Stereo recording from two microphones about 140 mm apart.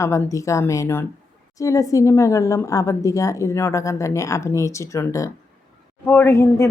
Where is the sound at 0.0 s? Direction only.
20° left (ahead or behind).